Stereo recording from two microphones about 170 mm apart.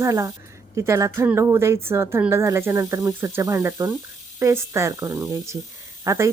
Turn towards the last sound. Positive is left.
turn(degrees=-15)  # may be behind; listen again after turning